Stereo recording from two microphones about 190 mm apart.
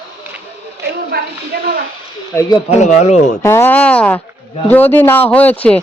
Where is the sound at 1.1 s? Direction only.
55° right (ahead or behind).